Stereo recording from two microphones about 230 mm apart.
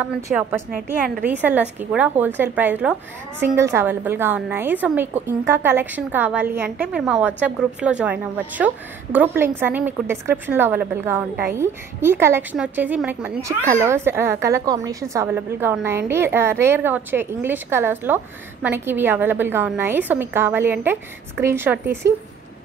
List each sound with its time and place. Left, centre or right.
0.0 s a woman's voice: centre
0.7 s a woman's voice: right
1.2 s a woman's voice: centre